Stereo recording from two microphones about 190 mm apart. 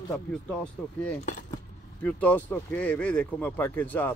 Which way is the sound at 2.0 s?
10° left (ahead or behind).